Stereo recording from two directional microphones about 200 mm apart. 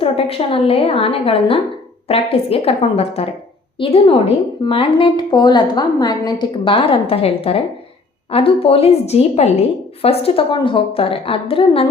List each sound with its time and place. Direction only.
0.0 s a woman's voice: 30° left (ahead or behind)